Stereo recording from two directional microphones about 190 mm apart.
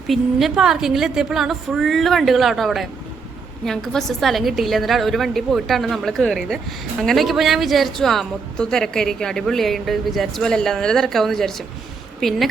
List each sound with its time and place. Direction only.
0.1 s a woman's voice: centre (ahead or behind)